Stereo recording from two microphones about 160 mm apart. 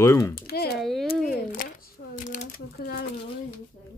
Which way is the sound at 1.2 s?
60° left (ahead or behind).